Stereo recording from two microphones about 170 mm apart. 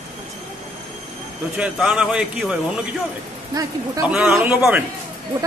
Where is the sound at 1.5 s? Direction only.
5° right (ahead or behind).